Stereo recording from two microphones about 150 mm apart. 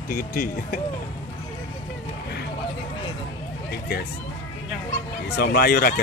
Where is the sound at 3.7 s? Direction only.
90° left.